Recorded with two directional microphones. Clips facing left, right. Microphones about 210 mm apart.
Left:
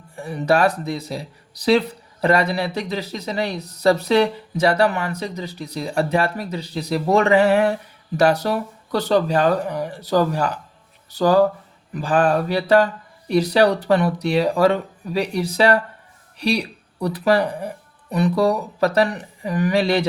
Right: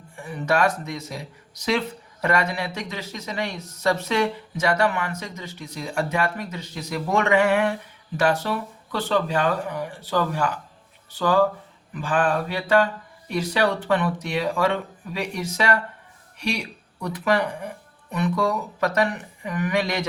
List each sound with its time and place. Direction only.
0.2 s speech: 35° left (ahead or behind)